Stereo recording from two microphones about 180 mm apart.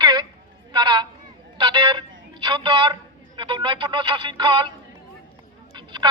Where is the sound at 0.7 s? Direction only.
25° right (ahead or behind).